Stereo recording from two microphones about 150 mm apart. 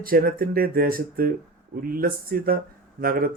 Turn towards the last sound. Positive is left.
turn(degrees=-80)